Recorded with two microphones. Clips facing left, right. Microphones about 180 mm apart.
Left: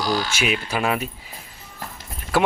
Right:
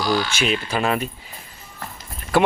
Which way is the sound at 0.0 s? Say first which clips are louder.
Right 2 dB; 40° left (ahead or behind).